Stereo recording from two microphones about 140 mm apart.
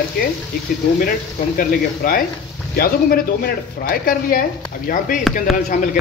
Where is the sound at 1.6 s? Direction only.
90° left.